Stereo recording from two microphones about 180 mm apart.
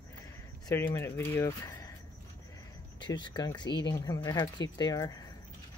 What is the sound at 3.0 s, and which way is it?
Speech, 25° left (ahead or behind).